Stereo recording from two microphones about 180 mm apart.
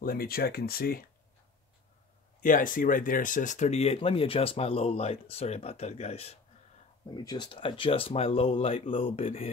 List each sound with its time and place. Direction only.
0.0 s speech: 55° left (ahead or behind)
2.4 s speech: 50° left (ahead or behind)
7.2 s speech: 25° left (ahead or behind)